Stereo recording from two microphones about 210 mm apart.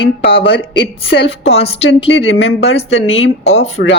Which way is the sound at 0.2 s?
50° left (ahead or behind).